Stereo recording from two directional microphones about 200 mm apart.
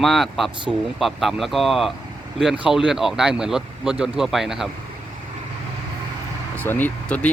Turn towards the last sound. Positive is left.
turn(degrees=5)  # may be behind; listen again after turning